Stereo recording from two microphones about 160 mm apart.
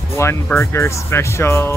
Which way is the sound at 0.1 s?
15° left (ahead or behind).